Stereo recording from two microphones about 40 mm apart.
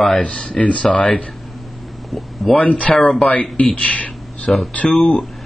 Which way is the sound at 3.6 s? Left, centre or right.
Left.